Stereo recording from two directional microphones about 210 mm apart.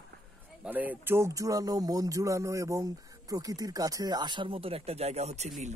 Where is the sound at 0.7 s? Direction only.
10° right (ahead or behind).